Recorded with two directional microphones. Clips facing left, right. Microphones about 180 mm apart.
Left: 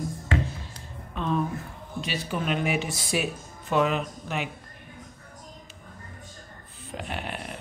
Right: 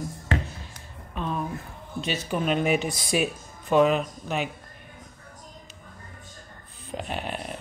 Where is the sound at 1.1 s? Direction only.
5° right (ahead or behind).